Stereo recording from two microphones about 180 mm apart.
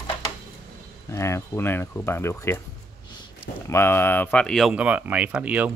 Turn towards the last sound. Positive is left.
turn(degrees=-5)  # may be behind; listen again after turning